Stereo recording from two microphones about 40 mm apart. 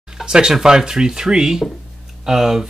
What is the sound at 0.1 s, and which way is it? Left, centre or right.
Speech, centre.